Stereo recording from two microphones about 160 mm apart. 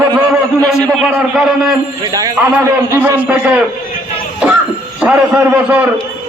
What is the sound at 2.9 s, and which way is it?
Speech, 10° right (ahead or behind).